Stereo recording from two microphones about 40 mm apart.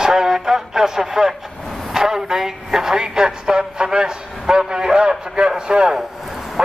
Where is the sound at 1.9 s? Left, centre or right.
Centre.